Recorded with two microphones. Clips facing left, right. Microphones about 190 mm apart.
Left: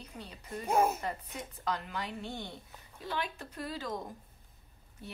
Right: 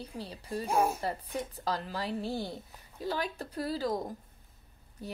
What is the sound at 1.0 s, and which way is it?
Speech, 35° right (ahead or behind).